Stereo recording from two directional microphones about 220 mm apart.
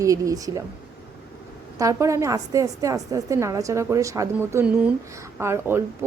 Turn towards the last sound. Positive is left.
turn(degrees=-10)  # may be behind; listen again after turning